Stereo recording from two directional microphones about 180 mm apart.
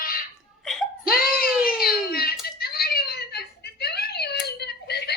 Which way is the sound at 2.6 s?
60° left (ahead or behind).